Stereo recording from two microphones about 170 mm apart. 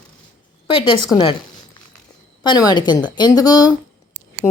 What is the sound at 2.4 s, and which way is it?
A woman's voice, 25° left (ahead or behind).